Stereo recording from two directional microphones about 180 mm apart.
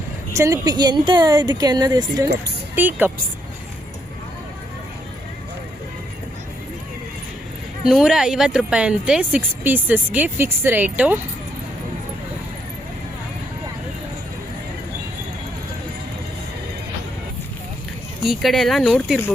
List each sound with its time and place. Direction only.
0.3 s speech: 15° right (ahead or behind)
2.7 s speech: 10° right (ahead or behind)
7.9 s speech: centre (ahead or behind)
18.2 s speech: centre (ahead or behind)